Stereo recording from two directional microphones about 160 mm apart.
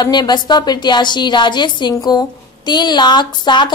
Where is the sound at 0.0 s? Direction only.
25° left (ahead or behind).